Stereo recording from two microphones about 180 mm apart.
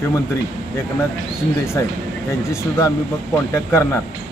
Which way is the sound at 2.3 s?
15° left (ahead or behind).